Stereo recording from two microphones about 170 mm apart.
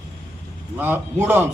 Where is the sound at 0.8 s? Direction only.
10° right (ahead or behind).